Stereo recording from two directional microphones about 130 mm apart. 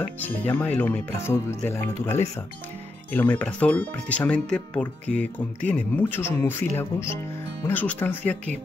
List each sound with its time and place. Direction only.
0.0 s speech: 15° left (ahead or behind)